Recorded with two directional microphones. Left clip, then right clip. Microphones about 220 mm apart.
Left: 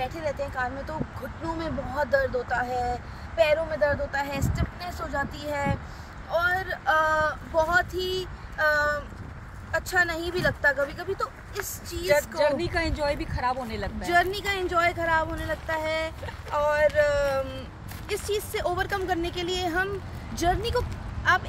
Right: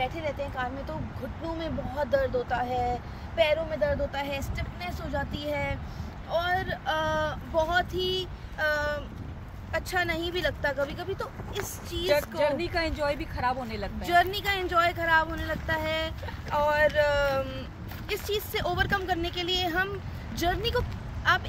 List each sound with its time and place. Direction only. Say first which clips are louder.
0.0 s speech: left 1 dB; 5° right (ahead or behind)
12.1 s speech: left 3 dB; 5° left (ahead or behind)
14.0 s speech: even; 10° right (ahead or behind)